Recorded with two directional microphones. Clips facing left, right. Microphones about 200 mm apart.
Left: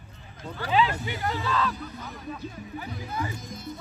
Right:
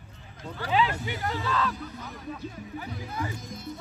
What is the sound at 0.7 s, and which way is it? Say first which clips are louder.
Speech: left 1 dB; 55° right (ahead or behind).